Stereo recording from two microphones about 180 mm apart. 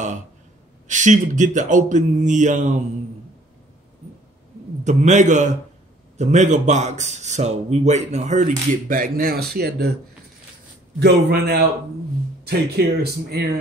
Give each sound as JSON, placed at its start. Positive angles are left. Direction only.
{"t": 0.8, "sound": "speech", "side_deg": -45}
{"t": 4.8, "sound": "a man's voice", "side_deg": -40}
{"t": 11.0, "sound": "speech", "side_deg": -65}